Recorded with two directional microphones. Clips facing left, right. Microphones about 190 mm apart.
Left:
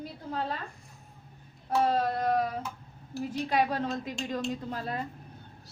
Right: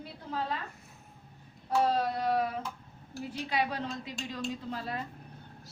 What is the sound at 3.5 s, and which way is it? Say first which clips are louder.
A woman's voice: left 4 dB; 45° left (ahead or behind).